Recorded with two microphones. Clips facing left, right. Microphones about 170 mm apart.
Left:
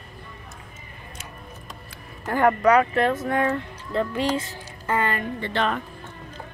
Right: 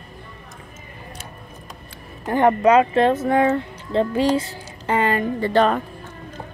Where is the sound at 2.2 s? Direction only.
20° right (ahead or behind).